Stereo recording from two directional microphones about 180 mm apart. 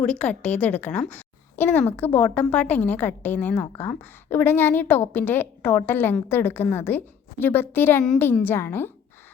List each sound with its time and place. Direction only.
0.0 s a woman's voice: 5° left (ahead or behind)